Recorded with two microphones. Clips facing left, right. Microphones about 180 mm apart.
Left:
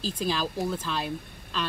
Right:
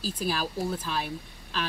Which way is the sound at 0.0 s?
5° right (ahead or behind).